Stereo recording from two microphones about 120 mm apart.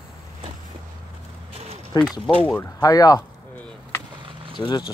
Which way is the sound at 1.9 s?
30° left (ahead or behind).